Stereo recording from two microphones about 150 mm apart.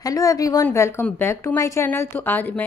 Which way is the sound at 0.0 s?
20° left (ahead or behind).